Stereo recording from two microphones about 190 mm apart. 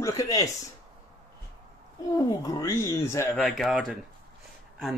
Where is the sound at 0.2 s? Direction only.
20° left (ahead or behind).